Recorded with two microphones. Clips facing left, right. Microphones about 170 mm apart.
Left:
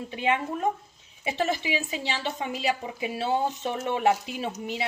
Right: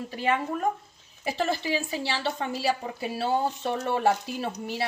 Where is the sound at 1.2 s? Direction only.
20° left (ahead or behind).